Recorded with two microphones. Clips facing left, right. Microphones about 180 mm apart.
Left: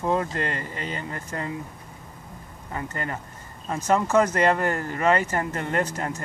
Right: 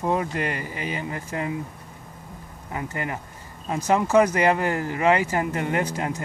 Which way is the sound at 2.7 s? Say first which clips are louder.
Right 1 dB; 15° right (ahead or behind).